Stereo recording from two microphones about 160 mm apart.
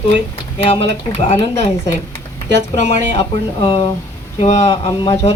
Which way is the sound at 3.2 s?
25° left (ahead or behind).